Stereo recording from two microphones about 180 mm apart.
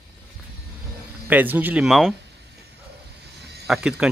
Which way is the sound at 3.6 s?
5° right (ahead or behind).